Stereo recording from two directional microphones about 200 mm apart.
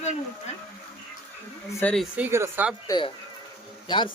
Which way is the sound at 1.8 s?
5° left (ahead or behind).